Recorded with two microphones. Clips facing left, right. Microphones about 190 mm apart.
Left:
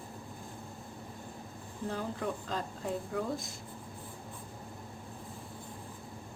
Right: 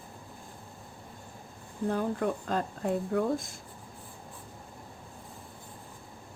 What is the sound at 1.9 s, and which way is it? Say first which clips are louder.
Speech: right 6 dB; 55° right (ahead or behind).